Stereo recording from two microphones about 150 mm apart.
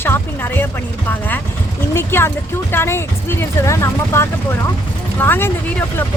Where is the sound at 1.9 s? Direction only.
15° left (ahead or behind).